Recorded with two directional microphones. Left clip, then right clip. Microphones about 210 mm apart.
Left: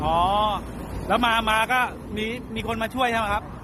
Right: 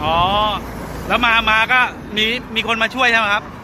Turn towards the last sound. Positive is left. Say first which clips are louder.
# right 8 dB
turn(degrees=10)  # may be behind; listen again after turning